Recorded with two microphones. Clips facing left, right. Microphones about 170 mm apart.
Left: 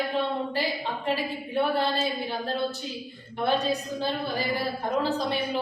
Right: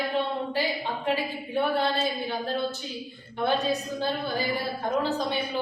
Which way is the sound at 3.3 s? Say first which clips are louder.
Even; centre (ahead or behind).